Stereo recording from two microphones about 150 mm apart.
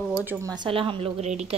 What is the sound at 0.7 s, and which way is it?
Speech, 35° right (ahead or behind).